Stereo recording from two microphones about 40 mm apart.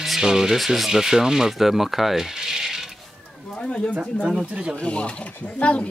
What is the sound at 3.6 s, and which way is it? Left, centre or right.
Speech, left.